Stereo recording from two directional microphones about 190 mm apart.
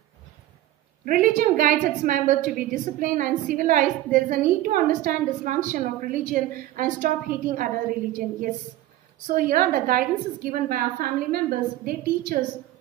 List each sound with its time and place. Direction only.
1.0 s a woman's voice: 45° right (ahead or behind)
9.3 s a woman's voice: 50° right (ahead or behind)